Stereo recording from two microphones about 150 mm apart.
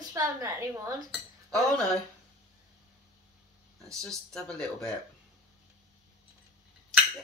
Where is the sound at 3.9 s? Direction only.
5° left (ahead or behind).